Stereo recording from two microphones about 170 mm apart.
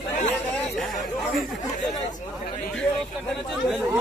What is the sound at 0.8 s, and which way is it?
Speech, centre (ahead or behind).